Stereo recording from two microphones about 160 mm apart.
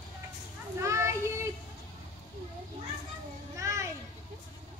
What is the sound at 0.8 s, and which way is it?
Children playing, 15° right (ahead or behind).